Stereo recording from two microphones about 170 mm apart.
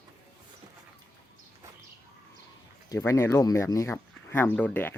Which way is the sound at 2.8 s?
15° left (ahead or behind).